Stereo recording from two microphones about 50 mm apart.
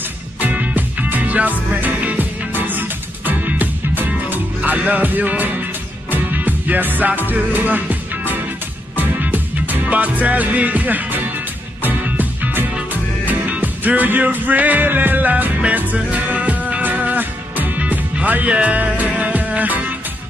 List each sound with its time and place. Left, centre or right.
0.4 s music: right
4.6 s music: right